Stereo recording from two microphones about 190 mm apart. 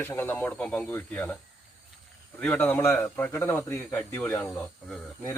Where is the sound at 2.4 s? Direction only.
5° left (ahead or behind).